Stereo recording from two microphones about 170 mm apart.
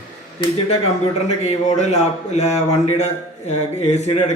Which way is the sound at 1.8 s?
40° left (ahead or behind).